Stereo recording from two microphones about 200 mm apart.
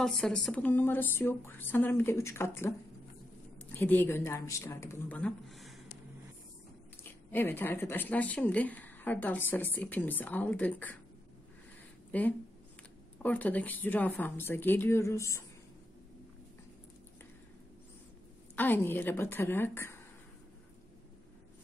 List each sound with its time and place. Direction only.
0.0 s speech: 5° left (ahead or behind)
7.0 s speech: 10° left (ahead or behind)
12.1 s speech: 10° left (ahead or behind)
18.6 s speech: 10° left (ahead or behind)